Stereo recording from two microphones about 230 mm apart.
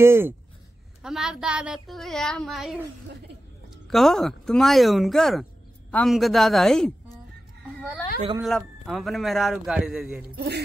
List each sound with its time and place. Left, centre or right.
0.0 s a man's voice: centre
3.9 s speech: centre
8.4 s a man's voice: centre
10.3 s speech: right